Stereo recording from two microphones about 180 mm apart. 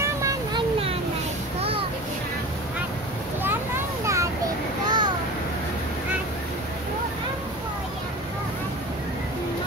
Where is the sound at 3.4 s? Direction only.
10° right (ahead or behind).